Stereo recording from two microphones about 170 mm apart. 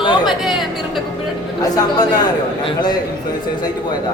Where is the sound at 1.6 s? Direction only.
20° left (ahead or behind).